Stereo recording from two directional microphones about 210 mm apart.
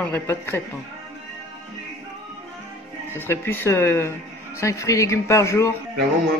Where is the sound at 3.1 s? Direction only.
10° left (ahead or behind).